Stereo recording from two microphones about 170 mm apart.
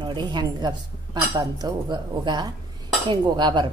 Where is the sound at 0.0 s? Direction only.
25° right (ahead or behind).